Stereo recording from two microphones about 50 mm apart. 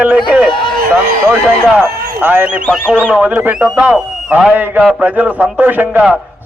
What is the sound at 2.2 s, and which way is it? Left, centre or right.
Speech, right.